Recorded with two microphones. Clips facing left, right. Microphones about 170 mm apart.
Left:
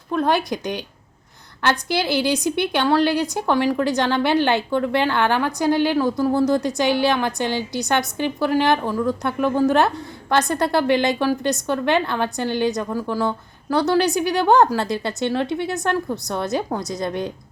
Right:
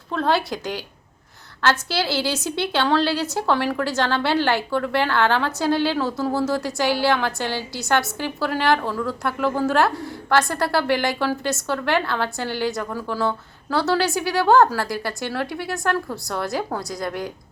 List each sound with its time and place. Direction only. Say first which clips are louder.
0.1 s a woman's voice: left 2 dB; 15° left (ahead or behind)